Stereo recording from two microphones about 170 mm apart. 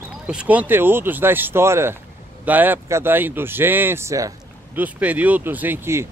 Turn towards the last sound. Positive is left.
turn(degrees=-15)  # may be behind; listen again after turning